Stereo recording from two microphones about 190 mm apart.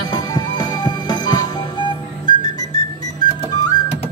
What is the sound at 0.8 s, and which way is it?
Jingle bell, 20° left (ahead or behind).